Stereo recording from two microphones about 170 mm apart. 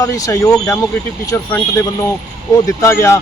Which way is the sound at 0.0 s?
20° left (ahead or behind).